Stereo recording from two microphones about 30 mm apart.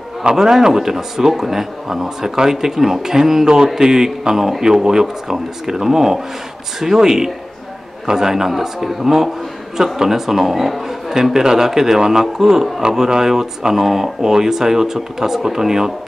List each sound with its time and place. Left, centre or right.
0.4 s a man's voice: centre
11.3 s a man's voice: centre